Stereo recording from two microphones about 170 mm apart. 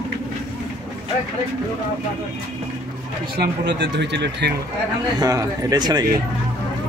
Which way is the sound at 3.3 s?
80° right.